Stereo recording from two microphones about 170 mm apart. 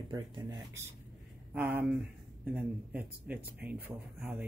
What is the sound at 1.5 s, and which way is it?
Speech, 10° right (ahead or behind).